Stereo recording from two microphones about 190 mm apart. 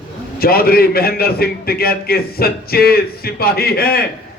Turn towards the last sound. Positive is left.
turn(degrees=55)  # may be behind; listen again after turning